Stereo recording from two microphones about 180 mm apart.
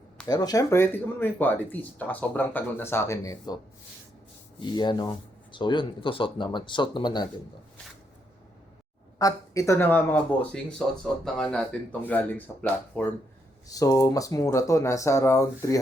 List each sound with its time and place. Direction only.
0.3 s speech: 20° left (ahead or behind)
4.6 s speech: 25° left (ahead or behind)
9.1 s speech: 20° left (ahead or behind)
13.7 s speech: 20° left (ahead or behind)